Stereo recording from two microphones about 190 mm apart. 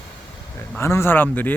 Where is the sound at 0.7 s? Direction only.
15° left (ahead or behind).